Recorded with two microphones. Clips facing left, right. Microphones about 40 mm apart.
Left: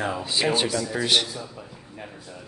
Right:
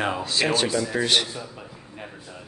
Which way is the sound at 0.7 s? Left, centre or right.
Centre.